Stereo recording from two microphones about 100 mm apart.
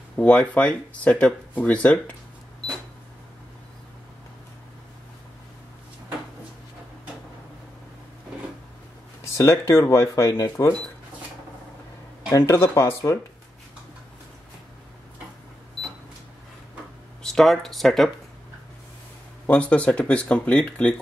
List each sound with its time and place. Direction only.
0.2 s speech: 10° left (ahead or behind)
9.2 s speech: 30° left (ahead or behind)
12.3 s speech: 30° left (ahead or behind)
17.2 s speech: 5° left (ahead or behind)
19.4 s speech: 15° left (ahead or behind)